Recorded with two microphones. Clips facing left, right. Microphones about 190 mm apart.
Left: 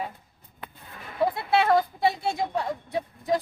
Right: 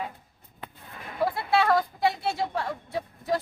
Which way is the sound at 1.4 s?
25° left (ahead or behind).